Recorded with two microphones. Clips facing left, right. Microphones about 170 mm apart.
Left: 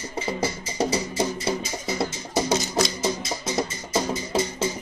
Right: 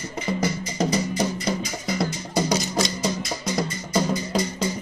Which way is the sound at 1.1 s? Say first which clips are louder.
Right 1 dB; 25° left (ahead or behind).